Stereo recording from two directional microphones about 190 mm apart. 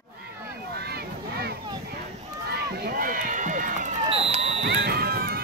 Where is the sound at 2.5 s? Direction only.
55° right (ahead or behind); by 3.9 s 40° right (ahead or behind).